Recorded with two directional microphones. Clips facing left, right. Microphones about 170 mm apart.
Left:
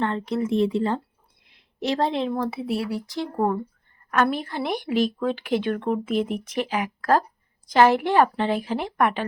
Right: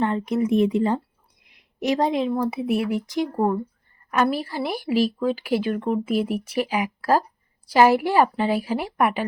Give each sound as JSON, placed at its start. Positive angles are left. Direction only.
{"t": 0.0, "sound": "a woman's voice", "side_deg": -15}
{"t": 2.5, "sound": "a woman's voice", "side_deg": -20}